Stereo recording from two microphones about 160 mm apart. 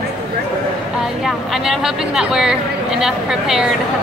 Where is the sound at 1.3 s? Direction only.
Centre (ahead or behind).